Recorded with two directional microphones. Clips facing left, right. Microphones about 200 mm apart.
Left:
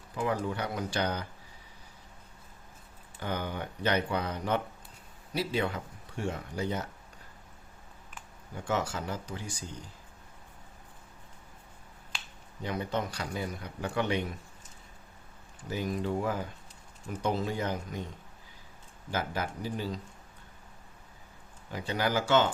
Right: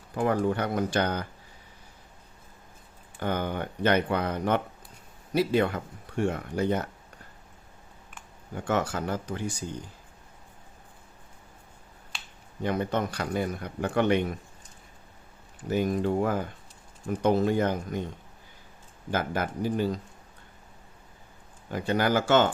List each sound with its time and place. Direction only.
0.1 s speech: 55° right (ahead or behind)
3.2 s speech: 55° right (ahead or behind)
8.5 s speech: 55° right (ahead or behind)
12.6 s speech: 55° right (ahead or behind)
15.7 s speech: 55° right (ahead or behind)
19.1 s speech: 55° right (ahead or behind)
21.7 s speech: 55° right (ahead or behind)